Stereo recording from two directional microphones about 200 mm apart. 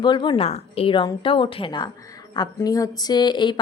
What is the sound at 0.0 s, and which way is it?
Speech, 20° left (ahead or behind).